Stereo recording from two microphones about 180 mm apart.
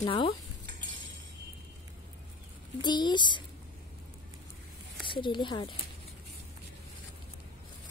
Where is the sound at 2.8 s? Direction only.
25° left (ahead or behind).